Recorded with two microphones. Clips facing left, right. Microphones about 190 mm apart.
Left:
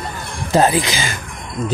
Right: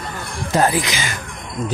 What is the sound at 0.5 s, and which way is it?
Speech, 25° left (ahead or behind).